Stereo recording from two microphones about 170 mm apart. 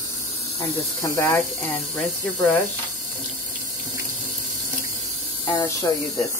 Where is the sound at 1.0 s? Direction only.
15° left (ahead or behind).